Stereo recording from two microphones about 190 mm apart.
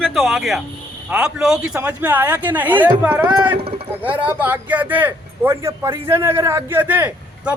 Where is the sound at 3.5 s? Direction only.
30° right (ahead or behind).